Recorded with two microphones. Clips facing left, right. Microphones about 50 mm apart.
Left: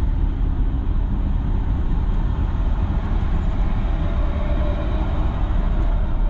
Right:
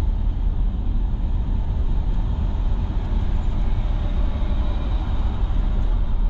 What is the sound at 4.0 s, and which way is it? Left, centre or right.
Vehicle, left.